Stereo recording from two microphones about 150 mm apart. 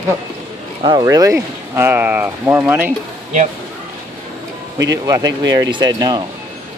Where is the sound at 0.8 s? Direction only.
25° right (ahead or behind).